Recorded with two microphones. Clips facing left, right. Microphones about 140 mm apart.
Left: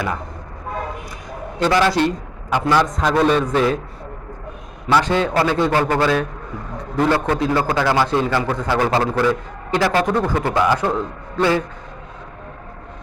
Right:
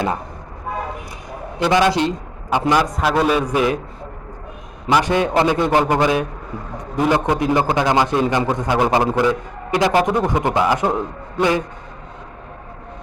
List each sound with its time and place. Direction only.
1.5 s a man's voice: 15° right (ahead or behind)
4.9 s a man's voice: 15° right (ahead or behind)